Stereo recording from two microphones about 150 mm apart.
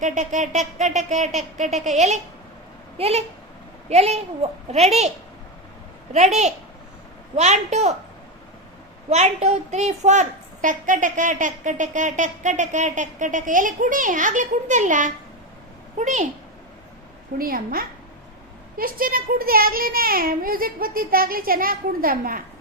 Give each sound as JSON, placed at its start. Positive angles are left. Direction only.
{"t": 0.0, "sound": "a sound", "side_deg": -55}
{"t": 4.7, "sound": "a child's voice", "side_deg": -45}
{"t": 6.1, "sound": "a woman's voice", "side_deg": -50}
{"t": 7.3, "sound": "a sound", "side_deg": -50}
{"t": 9.0, "sound": "a woman's voice", "side_deg": -50}
{"t": 17.3, "sound": "a child's voice", "side_deg": -75}